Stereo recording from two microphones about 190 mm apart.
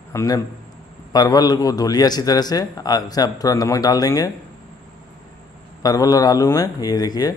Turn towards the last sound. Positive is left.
turn(degrees=20)  # may be behind; listen again after turning